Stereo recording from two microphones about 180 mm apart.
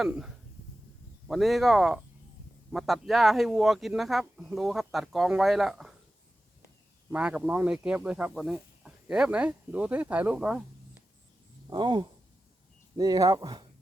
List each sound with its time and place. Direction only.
0.0 s speech: 5° right (ahead or behind)
7.1 s speech: 5° right (ahead or behind)
11.7 s speech: 25° right (ahead or behind)